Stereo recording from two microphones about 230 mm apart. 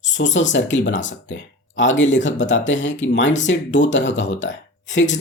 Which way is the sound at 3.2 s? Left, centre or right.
Left.